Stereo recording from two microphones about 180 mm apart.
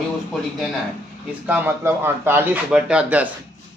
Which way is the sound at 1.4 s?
10° right (ahead or behind).